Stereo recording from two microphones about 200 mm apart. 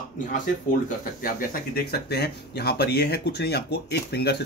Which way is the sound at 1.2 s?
45° left (ahead or behind).